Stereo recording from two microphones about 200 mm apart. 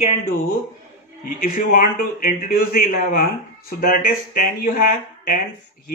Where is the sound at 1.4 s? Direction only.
45° left (ahead or behind).